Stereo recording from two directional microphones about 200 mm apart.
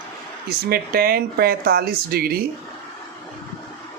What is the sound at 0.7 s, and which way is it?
Speech, 50° right (ahead or behind).